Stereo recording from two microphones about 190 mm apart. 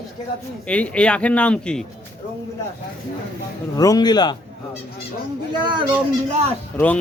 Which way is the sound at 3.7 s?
20° left (ahead or behind).